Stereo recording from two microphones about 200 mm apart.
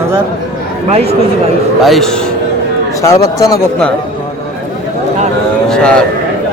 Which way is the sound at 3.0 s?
15° left (ahead or behind).